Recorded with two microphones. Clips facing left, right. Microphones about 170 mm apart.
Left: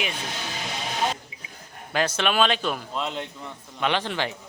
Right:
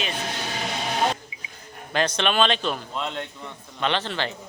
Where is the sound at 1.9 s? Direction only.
5° left (ahead or behind).